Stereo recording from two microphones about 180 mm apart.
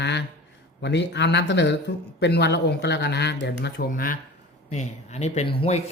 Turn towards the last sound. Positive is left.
turn(degrees=35)  # may be behind; listen again after turning